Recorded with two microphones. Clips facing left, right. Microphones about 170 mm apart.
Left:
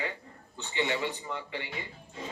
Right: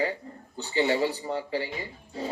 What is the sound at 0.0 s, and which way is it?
Speech, 35° right (ahead or behind).